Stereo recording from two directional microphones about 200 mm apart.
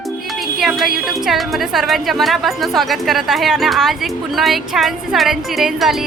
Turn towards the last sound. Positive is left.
turn(degrees=0)  # may be behind; listen again after turning